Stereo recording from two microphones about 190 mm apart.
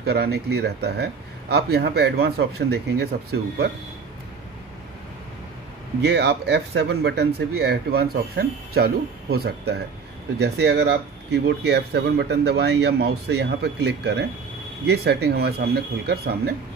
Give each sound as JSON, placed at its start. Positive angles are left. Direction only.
{"t": 0.0, "sound": "speech", "side_deg": -55}
{"t": 6.0, "sound": "speech", "side_deg": -65}